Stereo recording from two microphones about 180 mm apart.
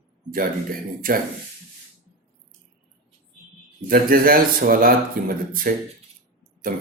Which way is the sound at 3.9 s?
55° right (ahead or behind).